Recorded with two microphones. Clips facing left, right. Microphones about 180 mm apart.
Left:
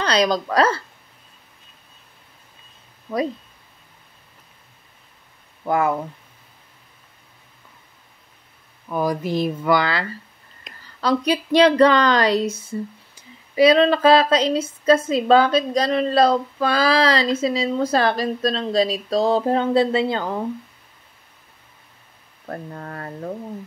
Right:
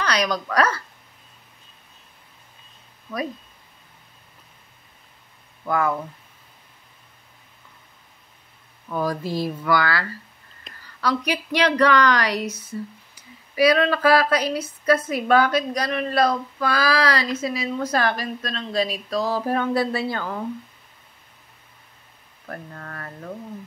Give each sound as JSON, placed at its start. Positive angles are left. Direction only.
{"t": 0.0, "sound": "speech", "side_deg": 30}
{"t": 5.7, "sound": "speech", "side_deg": 25}
{"t": 8.8, "sound": "speech", "side_deg": 15}
{"t": 22.5, "sound": "speech", "side_deg": 25}